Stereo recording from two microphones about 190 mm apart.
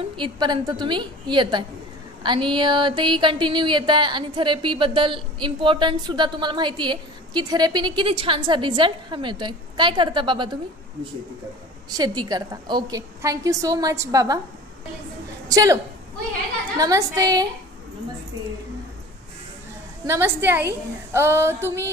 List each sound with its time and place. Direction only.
0.2 s music: 20° right (ahead or behind)
11.9 s music: 20° right (ahead or behind)
15.4 s a woman's voice: 20° right (ahead or behind)
16.7 s female singing: 15° right (ahead or behind)
20.1 s female singing: 10° right (ahead or behind)